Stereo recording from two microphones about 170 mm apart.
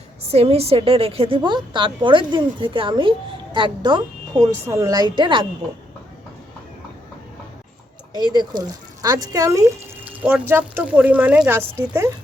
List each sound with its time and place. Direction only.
0.3 s a woman's voice: 35° right (ahead or behind)
8.1 s speech: 25° right (ahead or behind)